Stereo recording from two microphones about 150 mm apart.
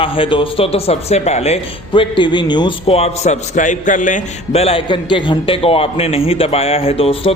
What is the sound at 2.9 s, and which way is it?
A man's voice, 45° left (ahead or behind).